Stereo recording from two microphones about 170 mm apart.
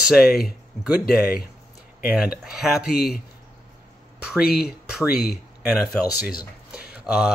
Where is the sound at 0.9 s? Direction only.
60° left (ahead or behind).